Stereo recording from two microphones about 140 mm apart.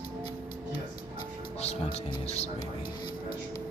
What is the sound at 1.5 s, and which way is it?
Music, 50° left (ahead or behind).